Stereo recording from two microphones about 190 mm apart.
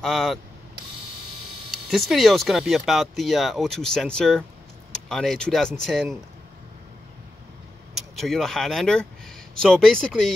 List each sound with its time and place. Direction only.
0.0 s speech: centre (ahead or behind)
1.7 s speech: centre (ahead or behind)
8.2 s speech: centre (ahead or behind)